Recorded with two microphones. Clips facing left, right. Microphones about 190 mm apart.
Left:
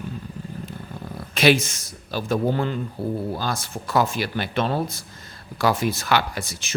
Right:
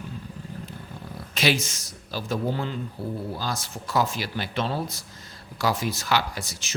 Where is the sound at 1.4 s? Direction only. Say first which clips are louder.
Left 6 dB; 55° left (ahead or behind).